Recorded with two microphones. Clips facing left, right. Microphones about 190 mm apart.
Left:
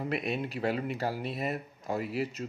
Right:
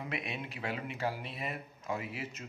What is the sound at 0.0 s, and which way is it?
Speech, 40° left (ahead or behind).